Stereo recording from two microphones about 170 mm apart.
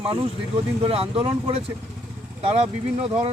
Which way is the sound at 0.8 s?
35° right (ahead or behind).